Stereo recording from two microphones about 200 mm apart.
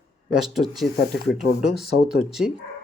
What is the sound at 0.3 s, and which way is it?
Speech, centre (ahead or behind).